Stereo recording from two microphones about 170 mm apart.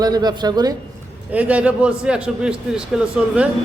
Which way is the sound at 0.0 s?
25° right (ahead or behind).